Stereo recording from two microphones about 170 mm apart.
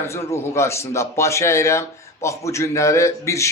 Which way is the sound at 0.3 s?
15° left (ahead or behind).